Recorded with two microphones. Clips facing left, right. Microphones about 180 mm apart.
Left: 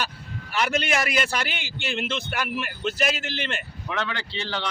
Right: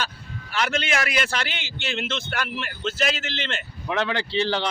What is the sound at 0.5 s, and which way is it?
Speech, 5° left (ahead or behind).